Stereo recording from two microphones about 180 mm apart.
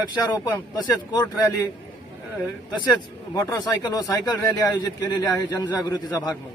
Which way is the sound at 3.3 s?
20° left (ahead or behind).